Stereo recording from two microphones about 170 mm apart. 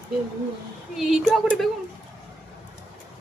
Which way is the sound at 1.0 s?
Centre (ahead or behind).